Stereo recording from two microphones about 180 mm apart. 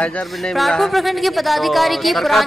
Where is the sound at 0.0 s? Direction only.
5° left (ahead or behind).